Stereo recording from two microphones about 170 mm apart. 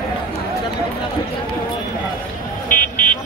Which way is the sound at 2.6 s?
50° left (ahead or behind).